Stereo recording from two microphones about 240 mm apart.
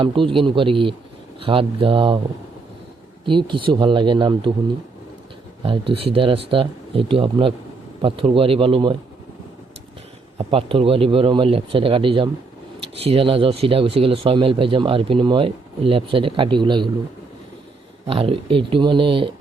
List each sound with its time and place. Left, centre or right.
0.0 s speech: right
3.2 s speech: centre
6.1 s speech: right
10.3 s speech: right
18.0 s speech: right